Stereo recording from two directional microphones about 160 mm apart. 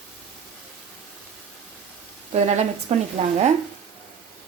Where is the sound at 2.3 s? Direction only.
40° right (ahead or behind).